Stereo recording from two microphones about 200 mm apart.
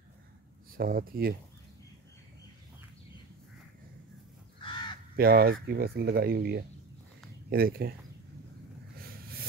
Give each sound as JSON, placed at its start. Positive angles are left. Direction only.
{"t": 0.7, "sound": "speech", "side_deg": -45}
{"t": 4.6, "sound": "crow", "side_deg": 25}
{"t": 5.1, "sound": "speech", "side_deg": -50}
{"t": 9.0, "sound": "vehicle", "side_deg": -50}